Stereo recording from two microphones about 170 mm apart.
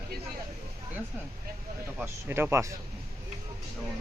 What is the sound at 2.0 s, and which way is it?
Speech, 10° right (ahead or behind).